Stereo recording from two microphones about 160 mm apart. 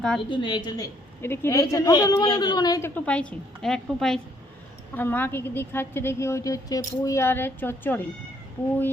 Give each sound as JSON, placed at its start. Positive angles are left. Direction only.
{"t": 0.3, "sound": "a woman's voice", "side_deg": 30}
{"t": 1.2, "sound": "a woman's voice", "side_deg": 15}
{"t": 2.9, "sound": "a woman's voice", "side_deg": 5}